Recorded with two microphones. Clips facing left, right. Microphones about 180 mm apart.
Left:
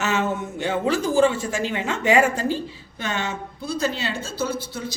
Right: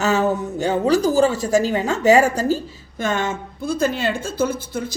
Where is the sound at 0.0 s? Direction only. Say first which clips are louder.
Right 5 dB; 35° right (ahead or behind).